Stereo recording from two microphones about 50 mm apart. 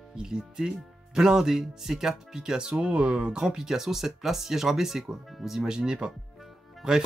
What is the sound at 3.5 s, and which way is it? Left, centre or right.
Speech, centre.